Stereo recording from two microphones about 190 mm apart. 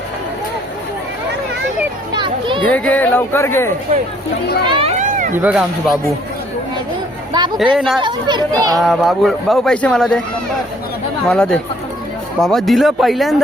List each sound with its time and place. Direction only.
2.1 s a child's voice: 25° right (ahead or behind)
2.7 s speech: 10° left (ahead or behind)
4.6 s speech: 25° right (ahead or behind)
4.9 s a sound: 45° right (ahead or behind)
5.4 s speech: 5° right (ahead or behind)
7.6 s speech: centre (ahead or behind)
8.0 s speech: 25° right (ahead or behind)
8.7 s speech: centre (ahead or behind)
11.3 s speech: 5° left (ahead or behind)